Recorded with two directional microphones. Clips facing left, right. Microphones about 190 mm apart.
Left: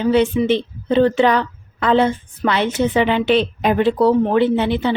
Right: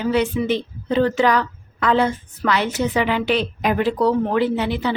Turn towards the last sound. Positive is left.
turn(degrees=25)  # may be behind; listen again after turning